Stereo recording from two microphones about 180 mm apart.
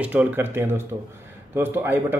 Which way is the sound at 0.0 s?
10° right (ahead or behind).